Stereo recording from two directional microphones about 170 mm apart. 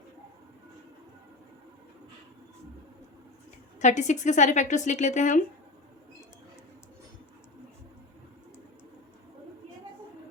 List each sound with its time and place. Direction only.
3.8 s a woman's voice: 45° left (ahead or behind)